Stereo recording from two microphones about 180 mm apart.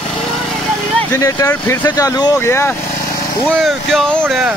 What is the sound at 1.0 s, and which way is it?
Speech, 15° left (ahead or behind).